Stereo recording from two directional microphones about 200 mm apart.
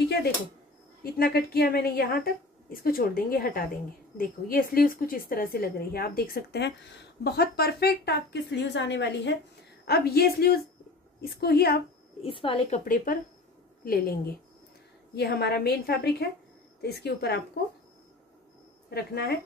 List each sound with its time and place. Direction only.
1.0 s a woman's voice: 50° left (ahead or behind)
12.2 s a woman's voice: 25° left (ahead or behind); by 17.4 s 55° left (ahead or behind)
18.9 s a woman's voice: 50° left (ahead or behind)